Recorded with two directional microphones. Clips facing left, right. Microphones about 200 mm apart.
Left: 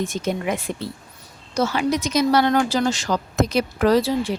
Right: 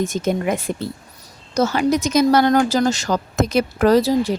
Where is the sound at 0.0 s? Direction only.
45° right (ahead or behind).